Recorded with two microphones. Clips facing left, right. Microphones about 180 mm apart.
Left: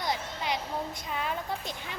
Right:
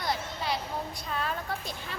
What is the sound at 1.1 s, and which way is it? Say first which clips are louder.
Speech: even; 15° left (ahead or behind).